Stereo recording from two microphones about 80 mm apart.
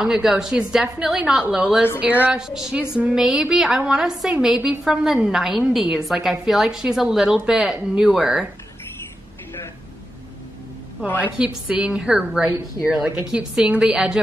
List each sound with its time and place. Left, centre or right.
0.0 s a woman's voice: centre
11.1 s a woman's voice: centre